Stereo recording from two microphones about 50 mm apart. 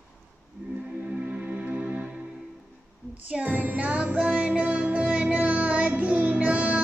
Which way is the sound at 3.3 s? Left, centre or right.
Right.